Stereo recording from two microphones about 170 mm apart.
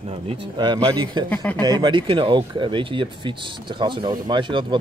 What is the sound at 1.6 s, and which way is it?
Speech, 25° right (ahead or behind).